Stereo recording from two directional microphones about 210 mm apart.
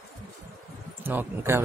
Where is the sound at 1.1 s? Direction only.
10° right (ahead or behind).